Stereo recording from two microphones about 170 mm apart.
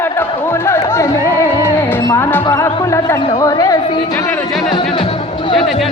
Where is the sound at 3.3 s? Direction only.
20° left (ahead or behind).